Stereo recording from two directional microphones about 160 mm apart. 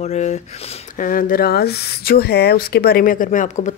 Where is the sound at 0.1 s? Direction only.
45° left (ahead or behind).